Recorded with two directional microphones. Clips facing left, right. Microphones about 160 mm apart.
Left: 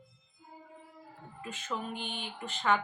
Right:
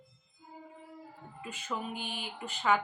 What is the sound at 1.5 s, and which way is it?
A woman's voice, 10° right (ahead or behind).